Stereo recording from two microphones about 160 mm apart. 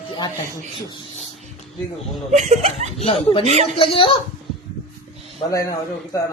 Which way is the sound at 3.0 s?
35° left (ahead or behind).